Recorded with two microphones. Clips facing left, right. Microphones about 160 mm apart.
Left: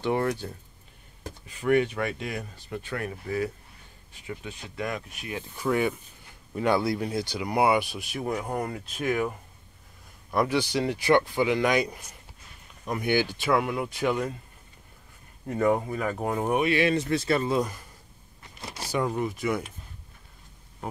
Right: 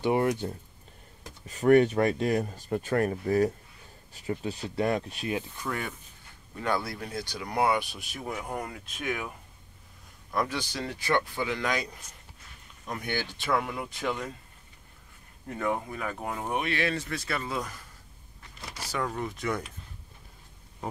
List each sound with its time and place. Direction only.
0.0 s speech: 15° right (ahead or behind)
1.5 s speech: 40° right (ahead or behind)
5.6 s speech: 10° left (ahead or behind)
8.5 s speech: 35° left (ahead or behind)
10.3 s speech: 10° left (ahead or behind)
15.5 s speech: 40° left (ahead or behind)
16.4 s speech: 10° left (ahead or behind)
18.9 s speech: 15° left (ahead or behind)